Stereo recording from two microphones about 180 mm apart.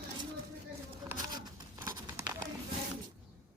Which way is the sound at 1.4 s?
20° right (ahead or behind).